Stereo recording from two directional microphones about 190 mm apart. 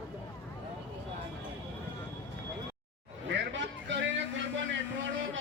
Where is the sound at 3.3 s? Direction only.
70° right (ahead or behind).